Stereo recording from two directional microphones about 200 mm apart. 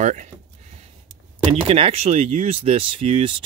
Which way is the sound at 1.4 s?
25° right (ahead or behind).